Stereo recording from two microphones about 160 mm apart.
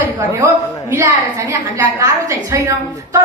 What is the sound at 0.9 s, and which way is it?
A woman's voice, 20° right (ahead or behind).